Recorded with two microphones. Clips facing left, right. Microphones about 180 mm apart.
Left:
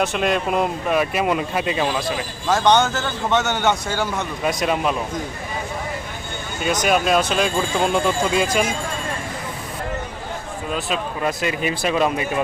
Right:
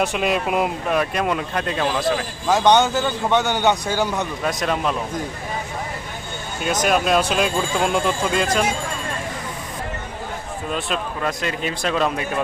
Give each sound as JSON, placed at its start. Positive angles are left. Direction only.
{"t": 0.1, "sound": "speech", "side_deg": -5}
{"t": 2.5, "sound": "a man's voice", "side_deg": -15}
{"t": 4.4, "sound": "speech", "side_deg": 5}
{"t": 6.8, "sound": "speech", "side_deg": 0}
{"t": 10.7, "sound": "speech", "side_deg": 0}